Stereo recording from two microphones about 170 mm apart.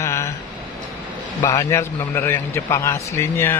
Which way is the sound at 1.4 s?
15° left (ahead or behind).